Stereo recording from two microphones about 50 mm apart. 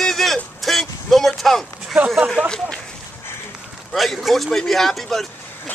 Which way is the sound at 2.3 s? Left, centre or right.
Centre.